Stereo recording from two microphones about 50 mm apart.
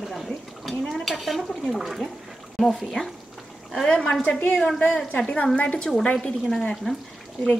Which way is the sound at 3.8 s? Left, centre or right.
Centre.